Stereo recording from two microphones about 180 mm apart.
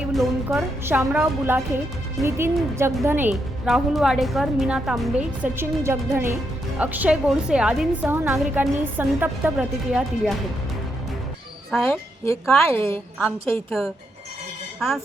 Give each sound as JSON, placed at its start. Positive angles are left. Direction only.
{"t": 0.1, "sound": "music", "side_deg": 0}
{"t": 0.9, "sound": "speech", "side_deg": -10}
{"t": 3.7, "sound": "a woman's voice", "side_deg": 0}
{"t": 11.9, "sound": "a woman's voice", "side_deg": 15}
{"t": 13.7, "sound": "a woman's voice", "side_deg": 0}